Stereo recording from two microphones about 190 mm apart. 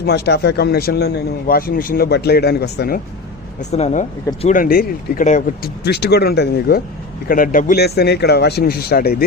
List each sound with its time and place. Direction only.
0.0 s a man's voice: 60° left (ahead or behind)
3.6 s speech: 35° left (ahead or behind)
4.4 s speech: 45° left (ahead or behind)
5.8 s a man's voice: 60° left (ahead or behind)
7.3 s a man's voice: 45° left (ahead or behind)